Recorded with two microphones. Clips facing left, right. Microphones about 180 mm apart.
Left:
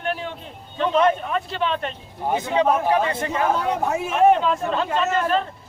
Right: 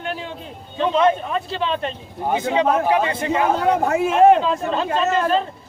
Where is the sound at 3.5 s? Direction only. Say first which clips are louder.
Right 5 dB; 70° right (ahead or behind); by 4.1 s 85° right.